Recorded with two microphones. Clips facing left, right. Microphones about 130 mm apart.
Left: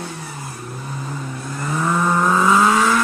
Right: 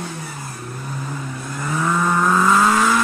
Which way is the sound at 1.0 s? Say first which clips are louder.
Even; centre (ahead or behind).